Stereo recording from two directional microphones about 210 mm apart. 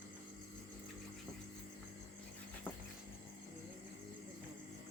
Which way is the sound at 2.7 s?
5° left (ahead or behind).